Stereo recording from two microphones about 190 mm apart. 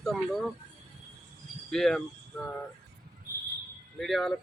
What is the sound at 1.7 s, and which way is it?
Speech, centre (ahead or behind).